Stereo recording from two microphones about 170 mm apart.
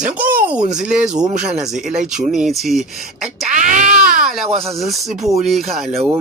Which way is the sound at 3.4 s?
45° right (ahead or behind).